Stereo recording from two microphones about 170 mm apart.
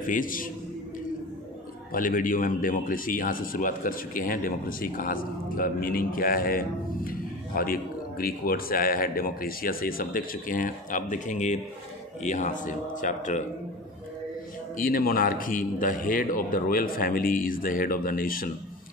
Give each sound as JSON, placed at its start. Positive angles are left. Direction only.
{"t": 0.0, "sound": "a man's voice", "side_deg": 55}
{"t": 1.9, "sound": "a man's voice", "side_deg": 55}
{"t": 14.8, "sound": "a man's voice", "side_deg": 55}